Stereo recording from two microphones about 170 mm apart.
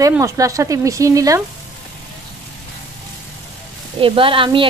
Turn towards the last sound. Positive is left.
turn(degrees=-30)  # may be behind; listen again after turning